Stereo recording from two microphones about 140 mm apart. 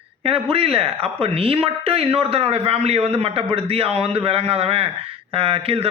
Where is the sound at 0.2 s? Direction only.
45° right (ahead or behind).